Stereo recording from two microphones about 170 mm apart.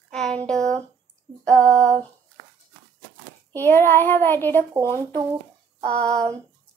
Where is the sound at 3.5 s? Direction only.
15° left (ahead or behind).